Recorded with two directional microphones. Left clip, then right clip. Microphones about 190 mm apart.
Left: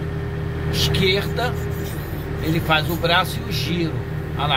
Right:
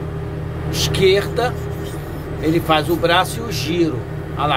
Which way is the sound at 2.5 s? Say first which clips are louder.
Right 3 dB; 15° right (ahead or behind).